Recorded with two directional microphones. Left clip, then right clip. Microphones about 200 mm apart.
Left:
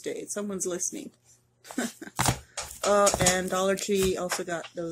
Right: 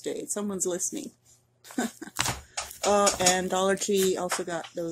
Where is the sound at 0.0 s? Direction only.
10° right (ahead or behind).